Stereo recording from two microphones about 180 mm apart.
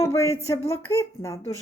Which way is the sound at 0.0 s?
15° left (ahead or behind).